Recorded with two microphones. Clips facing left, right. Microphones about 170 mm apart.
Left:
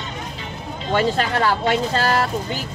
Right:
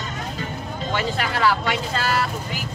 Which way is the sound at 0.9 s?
40° left (ahead or behind).